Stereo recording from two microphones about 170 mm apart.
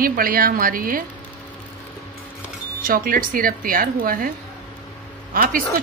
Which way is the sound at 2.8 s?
55° right (ahead or behind).